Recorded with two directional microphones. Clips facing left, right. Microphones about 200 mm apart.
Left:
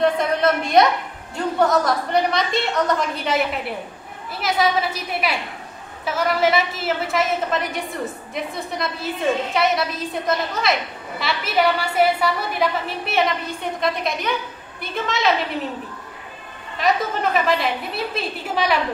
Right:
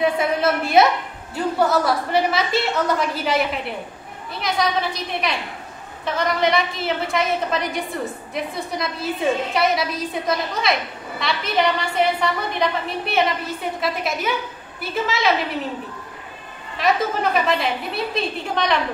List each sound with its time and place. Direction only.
0.0 s a woman's voice: 5° right (ahead or behind)
16.7 s a woman's voice: centre (ahead or behind)